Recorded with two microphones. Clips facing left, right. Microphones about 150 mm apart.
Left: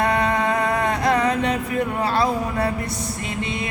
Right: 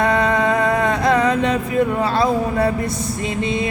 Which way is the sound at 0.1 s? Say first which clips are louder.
Right 3 dB; 25° right (ahead or behind).